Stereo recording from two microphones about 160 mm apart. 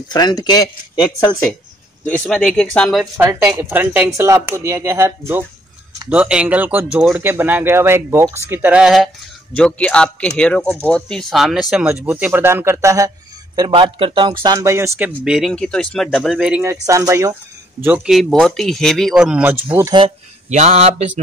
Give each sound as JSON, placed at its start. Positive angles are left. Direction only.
{"t": 0.1, "sound": "a man's voice", "side_deg": 25}
{"t": 2.0, "sound": "speech", "side_deg": 5}
{"t": 3.2, "sound": "speech", "side_deg": -10}
{"t": 14.6, "sound": "speech", "side_deg": -15}
{"t": 16.6, "sound": "speech", "side_deg": -20}
{"t": 20.4, "sound": "mantra", "side_deg": -45}